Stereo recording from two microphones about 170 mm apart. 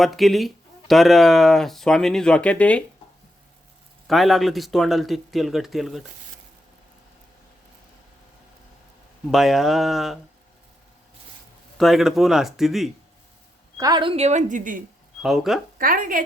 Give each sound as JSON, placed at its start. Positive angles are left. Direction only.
{"t": 0.0, "sound": "speech", "side_deg": 0}
{"t": 4.0, "sound": "speech", "side_deg": 0}
{"t": 9.2, "sound": "speech", "side_deg": 0}
{"t": 11.8, "sound": "speech", "side_deg": 0}
{"t": 13.7, "sound": "a woman's voice", "side_deg": -25}
{"t": 15.2, "sound": "speech", "side_deg": 0}
{"t": 15.8, "sound": "a woman's voice", "side_deg": -55}